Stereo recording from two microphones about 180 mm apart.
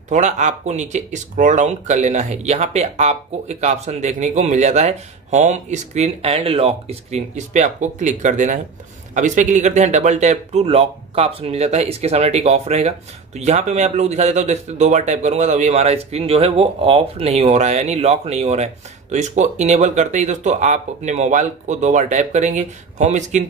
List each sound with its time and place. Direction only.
0.1 s speech: 40° right (ahead or behind)